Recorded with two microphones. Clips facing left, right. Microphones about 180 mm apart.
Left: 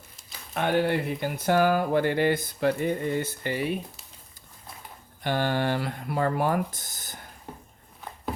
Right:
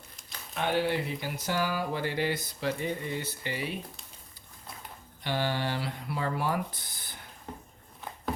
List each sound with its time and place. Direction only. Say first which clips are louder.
0.5 s speech: left 4 dB; 55° left (ahead or behind)
5.2 s speech: left 5 dB; 50° left (ahead or behind)